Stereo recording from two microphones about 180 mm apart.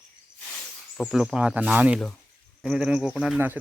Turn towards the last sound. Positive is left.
turn(degrees=-5)  # may be behind; listen again after turning